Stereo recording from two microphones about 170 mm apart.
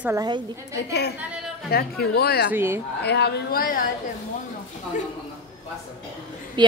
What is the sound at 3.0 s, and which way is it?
Speech, 75° left (ahead or behind).